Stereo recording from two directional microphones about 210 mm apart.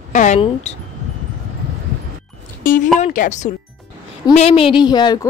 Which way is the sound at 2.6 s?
40° left (ahead or behind).